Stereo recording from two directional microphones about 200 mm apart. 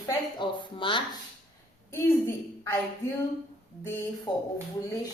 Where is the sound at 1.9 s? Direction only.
10° left (ahead or behind).